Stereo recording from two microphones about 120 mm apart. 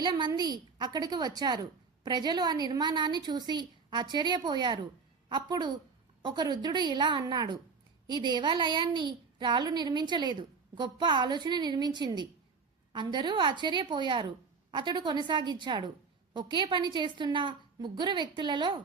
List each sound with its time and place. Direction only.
0.0 s a woman's voice: 40° right (ahead or behind)